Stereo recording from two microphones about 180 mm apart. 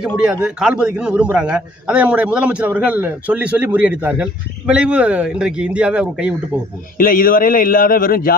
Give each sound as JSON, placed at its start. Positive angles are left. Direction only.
{"t": 0.0, "sound": "a man's voice", "side_deg": -5}
{"t": 7.0, "sound": "a man's voice", "side_deg": 50}